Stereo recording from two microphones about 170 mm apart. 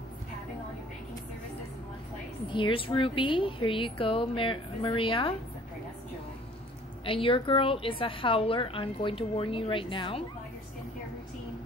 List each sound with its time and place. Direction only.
2.5 s a woman's voice: 30° left (ahead or behind)
7.1 s a woman's voice: 30° left (ahead or behind)